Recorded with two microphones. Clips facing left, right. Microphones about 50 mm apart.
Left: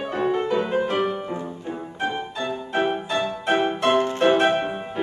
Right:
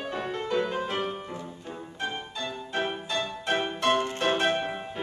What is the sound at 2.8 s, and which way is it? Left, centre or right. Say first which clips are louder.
Music: left 7 dB; centre.